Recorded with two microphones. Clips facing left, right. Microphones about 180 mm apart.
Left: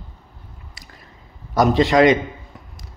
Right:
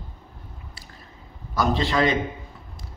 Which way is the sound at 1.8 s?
75° left (ahead or behind).